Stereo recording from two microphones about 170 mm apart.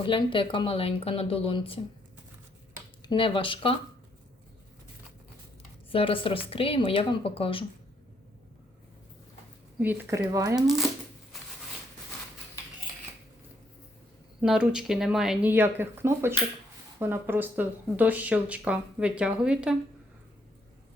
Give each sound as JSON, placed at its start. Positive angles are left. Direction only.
{"t": 0.0, "sound": "speech", "side_deg": 30}
{"t": 3.1, "sound": "speech", "side_deg": 30}
{"t": 5.9, "sound": "speech", "side_deg": 30}
{"t": 9.7, "sound": "speech", "side_deg": -10}
{"t": 14.4, "sound": "speech", "side_deg": -5}